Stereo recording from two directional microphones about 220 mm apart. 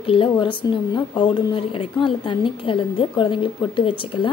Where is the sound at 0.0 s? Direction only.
25° left (ahead or behind).